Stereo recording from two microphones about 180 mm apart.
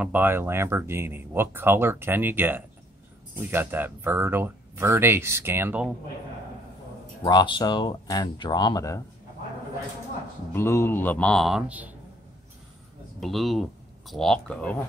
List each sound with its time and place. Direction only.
0.0 s speech: 10° right (ahead or behind)
7.2 s speech: 25° left (ahead or behind)
10.5 s a man's voice: 15° left (ahead or behind); by 11.9 s 5° right (ahead or behind)
13.2 s speech: centre (ahead or behind)